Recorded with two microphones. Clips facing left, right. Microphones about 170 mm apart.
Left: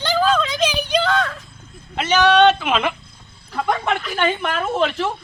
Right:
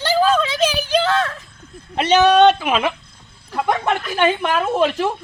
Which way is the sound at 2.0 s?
30° right (ahead or behind).